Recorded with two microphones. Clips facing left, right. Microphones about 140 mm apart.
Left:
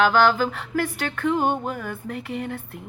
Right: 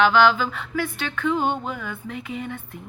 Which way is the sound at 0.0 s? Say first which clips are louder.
Right 1 dB; 45° left (ahead or behind).